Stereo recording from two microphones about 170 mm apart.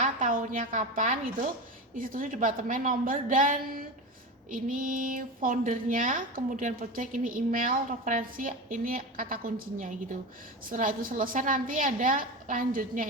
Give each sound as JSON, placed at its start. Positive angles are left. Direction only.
{"t": 0.0, "sound": "a woman's voice", "side_deg": -50}